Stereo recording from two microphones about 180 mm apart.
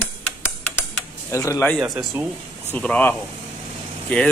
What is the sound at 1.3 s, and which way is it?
Speech, 15° left (ahead or behind).